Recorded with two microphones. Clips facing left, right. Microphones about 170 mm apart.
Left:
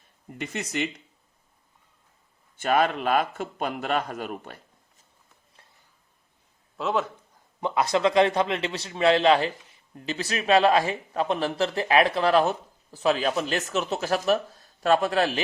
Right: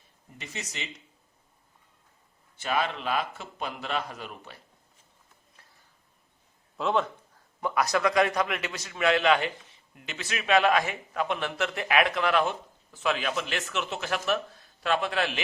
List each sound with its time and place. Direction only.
0.3 s speech: 55° left (ahead or behind)
2.6 s a man's voice: 50° left (ahead or behind)
6.7 s speech: centre (ahead or behind)
7.6 s a man's voice: 25° left (ahead or behind); by 15.4 s 40° left (ahead or behind)